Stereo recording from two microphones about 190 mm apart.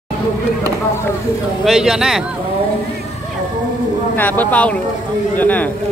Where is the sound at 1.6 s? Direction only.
Centre (ahead or behind).